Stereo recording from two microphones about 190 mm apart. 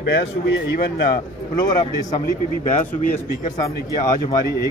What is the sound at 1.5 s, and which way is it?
Speech, 20° left (ahead or behind).